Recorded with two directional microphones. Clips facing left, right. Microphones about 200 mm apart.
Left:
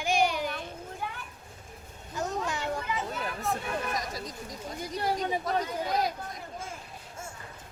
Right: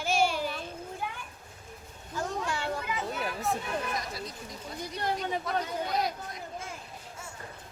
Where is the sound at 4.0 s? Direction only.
40° left (ahead or behind).